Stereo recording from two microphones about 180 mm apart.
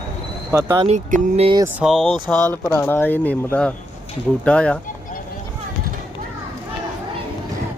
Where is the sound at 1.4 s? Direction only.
25° right (ahead or behind).